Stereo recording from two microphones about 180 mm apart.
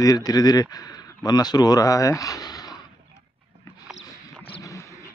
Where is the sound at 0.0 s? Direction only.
20° left (ahead or behind).